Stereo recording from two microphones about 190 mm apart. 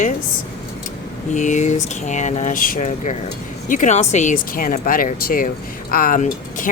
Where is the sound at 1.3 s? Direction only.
40° left (ahead or behind).